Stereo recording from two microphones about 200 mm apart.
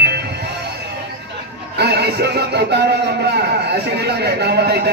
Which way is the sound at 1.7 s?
55° right (ahead or behind).